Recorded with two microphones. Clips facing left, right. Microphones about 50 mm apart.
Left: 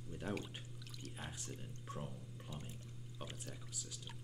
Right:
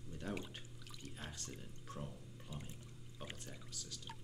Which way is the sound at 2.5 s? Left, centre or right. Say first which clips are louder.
Even; centre.